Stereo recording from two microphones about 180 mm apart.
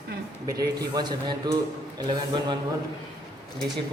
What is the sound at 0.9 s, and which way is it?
A man's voice, 20° right (ahead or behind).